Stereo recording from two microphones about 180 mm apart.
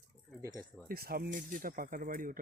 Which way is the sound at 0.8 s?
55° right (ahead or behind).